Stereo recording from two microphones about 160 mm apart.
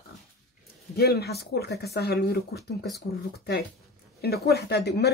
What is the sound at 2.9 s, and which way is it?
Speech, 90° left.